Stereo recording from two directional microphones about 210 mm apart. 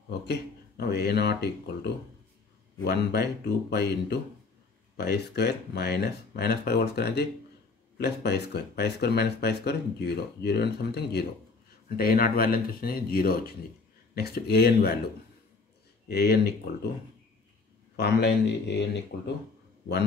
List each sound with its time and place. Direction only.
0.3 s speech: 50° left (ahead or behind)
2.8 s speech: 50° left (ahead or behind)
16.1 s speech: 50° left (ahead or behind)
17.9 s speech: 50° left (ahead or behind)